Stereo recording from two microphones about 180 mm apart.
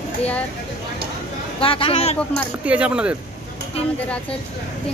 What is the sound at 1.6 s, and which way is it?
Speech, 30° left (ahead or behind).